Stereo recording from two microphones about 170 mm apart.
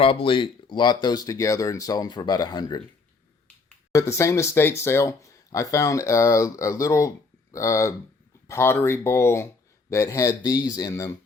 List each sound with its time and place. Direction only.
0.0 s speech: 30° left (ahead or behind)
3.9 s speech: 15° left (ahead or behind)